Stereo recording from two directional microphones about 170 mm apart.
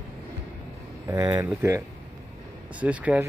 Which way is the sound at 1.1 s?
20° right (ahead or behind).